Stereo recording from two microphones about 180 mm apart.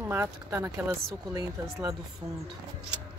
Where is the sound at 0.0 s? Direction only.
10° right (ahead or behind).